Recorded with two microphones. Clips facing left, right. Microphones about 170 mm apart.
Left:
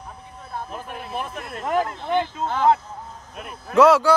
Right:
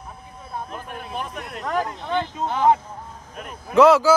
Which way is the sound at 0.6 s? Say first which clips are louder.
Even; 5° left (ahead or behind).